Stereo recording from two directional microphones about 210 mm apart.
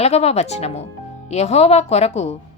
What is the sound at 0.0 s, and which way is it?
Speech, 30° left (ahead or behind).